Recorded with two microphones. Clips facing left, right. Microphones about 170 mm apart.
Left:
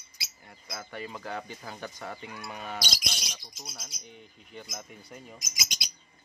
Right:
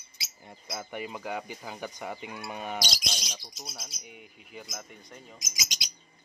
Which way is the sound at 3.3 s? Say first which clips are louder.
Right 2 dB; 5° right (ahead or behind).